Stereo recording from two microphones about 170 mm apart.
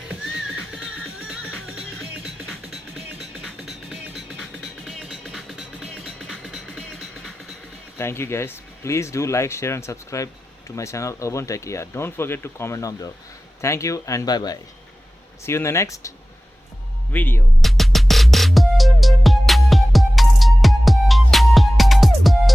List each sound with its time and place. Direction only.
0.1 s music: 5° right (ahead or behind)
3.4 s music: centre (ahead or behind)
7.9 s speech: 15° left (ahead or behind)
17.6 s music: centre (ahead or behind)